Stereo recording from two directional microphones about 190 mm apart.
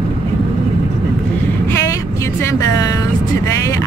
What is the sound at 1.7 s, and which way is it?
Vehicle, 15° left (ahead or behind).